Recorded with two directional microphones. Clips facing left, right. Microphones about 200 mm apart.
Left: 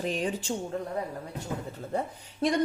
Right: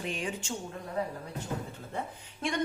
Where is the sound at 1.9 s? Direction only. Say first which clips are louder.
Left 6 dB; 40° left (ahead or behind).